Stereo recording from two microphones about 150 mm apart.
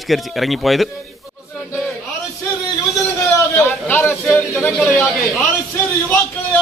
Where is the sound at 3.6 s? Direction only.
15° left (ahead or behind).